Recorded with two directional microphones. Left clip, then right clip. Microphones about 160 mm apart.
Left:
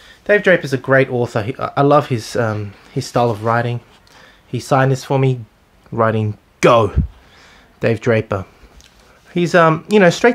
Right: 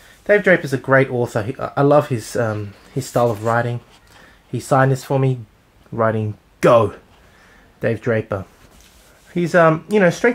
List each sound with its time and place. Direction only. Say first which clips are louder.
0.3 s speech: left 1 dB; 15° left (ahead or behind); by 10.3 s 35° left (ahead or behind)